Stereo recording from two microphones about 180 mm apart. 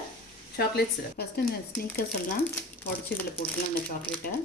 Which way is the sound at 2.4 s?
10° left (ahead or behind).